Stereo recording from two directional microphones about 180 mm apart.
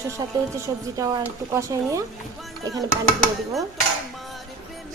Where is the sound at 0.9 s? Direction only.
20° right (ahead or behind).